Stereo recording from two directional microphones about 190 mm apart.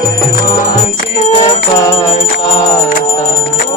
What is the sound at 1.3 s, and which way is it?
Music, 25° left (ahead or behind).